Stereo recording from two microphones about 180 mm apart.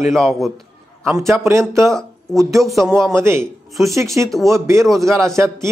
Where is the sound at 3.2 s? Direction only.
15° right (ahead or behind).